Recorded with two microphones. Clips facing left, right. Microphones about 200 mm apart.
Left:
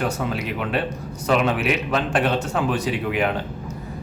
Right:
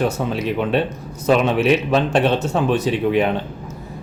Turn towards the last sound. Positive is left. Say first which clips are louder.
# right 5 dB
turn(degrees=-25)  # may be behind; listen again after turning